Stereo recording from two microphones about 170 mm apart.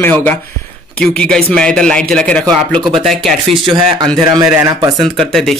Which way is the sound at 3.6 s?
25° right (ahead or behind).